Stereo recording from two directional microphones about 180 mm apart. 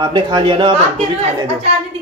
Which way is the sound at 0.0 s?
25° right (ahead or behind).